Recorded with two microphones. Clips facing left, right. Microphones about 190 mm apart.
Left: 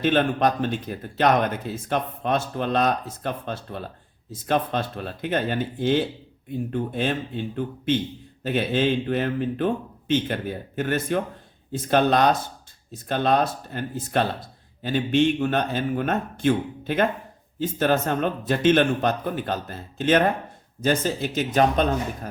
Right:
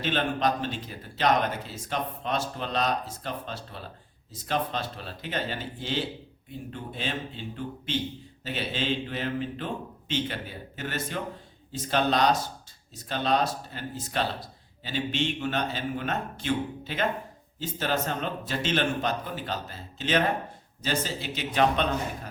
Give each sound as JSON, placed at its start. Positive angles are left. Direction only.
{"t": 0.0, "sound": "speech", "side_deg": 50}